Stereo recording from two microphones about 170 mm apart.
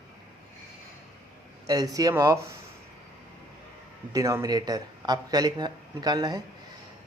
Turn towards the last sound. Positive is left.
turn(degrees=-25)  # may be behind; listen again after turning